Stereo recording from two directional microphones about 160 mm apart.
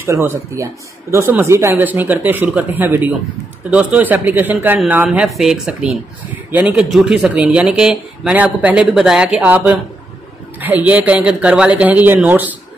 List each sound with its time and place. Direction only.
0.0 s speech: 15° right (ahead or behind)